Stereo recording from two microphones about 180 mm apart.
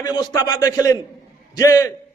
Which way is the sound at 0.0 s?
25° left (ahead or behind).